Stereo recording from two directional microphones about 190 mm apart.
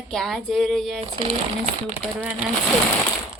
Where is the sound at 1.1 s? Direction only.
30° right (ahead or behind).